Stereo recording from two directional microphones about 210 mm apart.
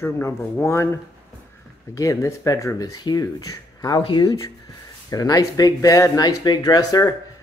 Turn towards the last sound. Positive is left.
turn(degrees=15)  # may be behind; listen again after turning